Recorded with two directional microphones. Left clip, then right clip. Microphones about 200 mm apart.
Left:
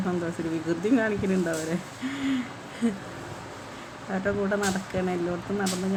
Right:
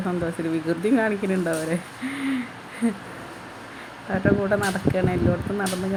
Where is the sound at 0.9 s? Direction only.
10° right (ahead or behind).